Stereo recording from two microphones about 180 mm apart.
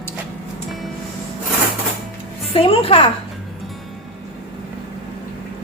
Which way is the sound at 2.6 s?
30° left (ahead or behind).